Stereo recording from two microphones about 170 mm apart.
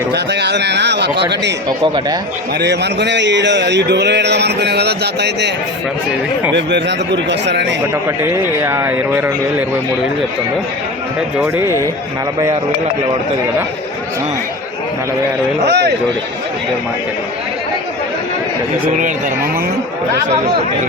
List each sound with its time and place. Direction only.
0.1 s speech: 85° right
2.6 s speech: 85° right
6.5 s speech: 90° right
8.2 s speech: 15° right (ahead or behind)
11.3 s speech: 15° right (ahead or behind)
15.6 s speech: 80° right